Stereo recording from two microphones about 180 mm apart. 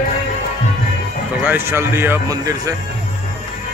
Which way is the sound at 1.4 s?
10° right (ahead or behind).